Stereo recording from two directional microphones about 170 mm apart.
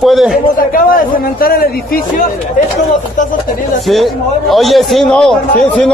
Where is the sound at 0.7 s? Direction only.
60° left (ahead or behind).